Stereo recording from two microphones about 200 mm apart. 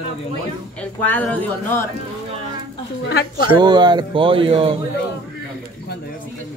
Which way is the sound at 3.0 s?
55° left (ahead or behind).